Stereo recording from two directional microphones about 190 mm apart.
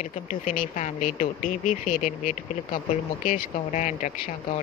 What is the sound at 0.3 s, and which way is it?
Speech, 40° left (ahead or behind).